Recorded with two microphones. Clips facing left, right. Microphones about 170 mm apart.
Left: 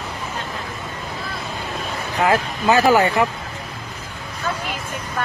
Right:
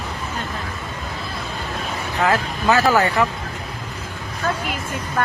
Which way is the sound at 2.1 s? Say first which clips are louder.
Left 2 dB; 15° left (ahead or behind).